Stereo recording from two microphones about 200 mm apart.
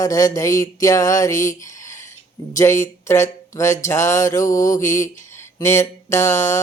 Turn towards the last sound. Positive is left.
turn(degrees=15)  # may be behind; listen again after turning